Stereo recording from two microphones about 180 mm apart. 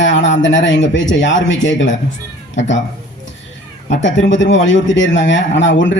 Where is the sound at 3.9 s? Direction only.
90° left.